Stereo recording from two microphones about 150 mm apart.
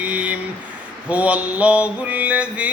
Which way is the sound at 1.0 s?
10° right (ahead or behind).